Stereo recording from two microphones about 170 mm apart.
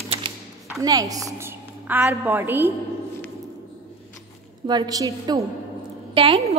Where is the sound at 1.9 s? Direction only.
10° right (ahead or behind).